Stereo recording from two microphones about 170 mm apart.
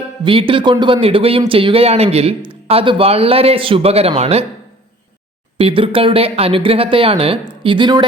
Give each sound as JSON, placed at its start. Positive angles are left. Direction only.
{"t": 0.3, "sound": "speech", "side_deg": -30}
{"t": 5.5, "sound": "a woman's voice", "side_deg": -30}